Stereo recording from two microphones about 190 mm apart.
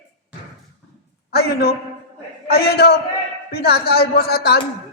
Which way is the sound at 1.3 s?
55° left (ahead or behind).